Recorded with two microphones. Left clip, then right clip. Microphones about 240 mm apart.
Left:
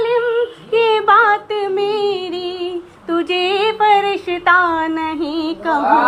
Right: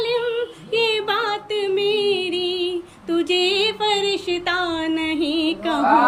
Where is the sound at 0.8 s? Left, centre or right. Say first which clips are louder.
Left 9 dB; centre.